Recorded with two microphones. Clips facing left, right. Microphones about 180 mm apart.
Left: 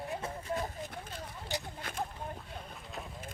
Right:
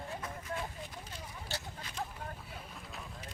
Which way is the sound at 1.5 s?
15° left (ahead or behind).